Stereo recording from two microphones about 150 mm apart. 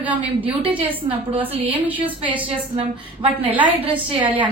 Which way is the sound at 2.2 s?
35° right (ahead or behind).